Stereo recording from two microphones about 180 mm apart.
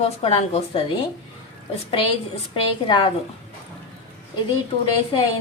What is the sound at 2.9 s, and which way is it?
Speech, 30° left (ahead or behind).